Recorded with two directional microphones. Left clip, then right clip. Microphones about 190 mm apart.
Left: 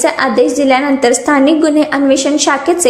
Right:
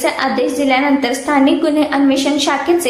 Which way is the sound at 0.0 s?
45° left (ahead or behind).